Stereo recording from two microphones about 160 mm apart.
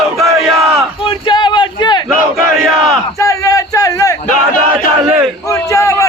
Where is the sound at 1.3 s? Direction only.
30° left (ahead or behind).